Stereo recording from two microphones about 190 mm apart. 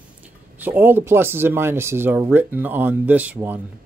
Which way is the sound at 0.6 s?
10° right (ahead or behind).